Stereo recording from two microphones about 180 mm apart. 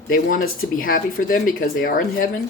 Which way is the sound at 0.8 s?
50° left (ahead or behind).